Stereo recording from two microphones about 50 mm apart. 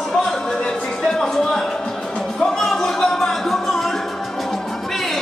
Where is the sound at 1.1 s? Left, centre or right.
Centre.